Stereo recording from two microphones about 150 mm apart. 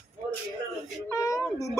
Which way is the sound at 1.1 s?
20° left (ahead or behind).